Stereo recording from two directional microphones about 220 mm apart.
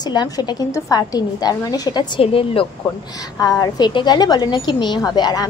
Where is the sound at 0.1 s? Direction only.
20° left (ahead or behind).